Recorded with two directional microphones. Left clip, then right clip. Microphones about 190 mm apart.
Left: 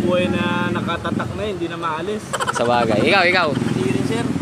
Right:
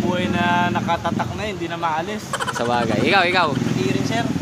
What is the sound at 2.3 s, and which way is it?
Speech, centre (ahead or behind).